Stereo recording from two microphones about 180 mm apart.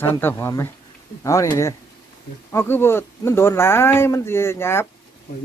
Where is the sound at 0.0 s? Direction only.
10° left (ahead or behind).